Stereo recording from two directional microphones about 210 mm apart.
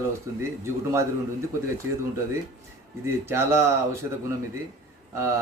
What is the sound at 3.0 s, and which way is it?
Speech, 10° right (ahead or behind).